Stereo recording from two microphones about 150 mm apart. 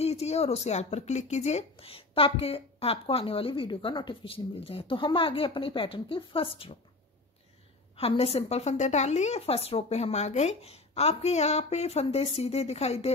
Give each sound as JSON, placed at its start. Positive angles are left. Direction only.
{"t": 0.0, "sound": "speech", "side_deg": 45}
{"t": 7.9, "sound": "a woman's voice", "side_deg": 40}